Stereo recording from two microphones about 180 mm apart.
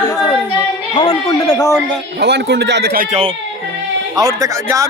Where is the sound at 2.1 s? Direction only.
70° right (ahead or behind).